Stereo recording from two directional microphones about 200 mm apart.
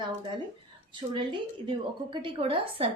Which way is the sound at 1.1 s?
25° right (ahead or behind).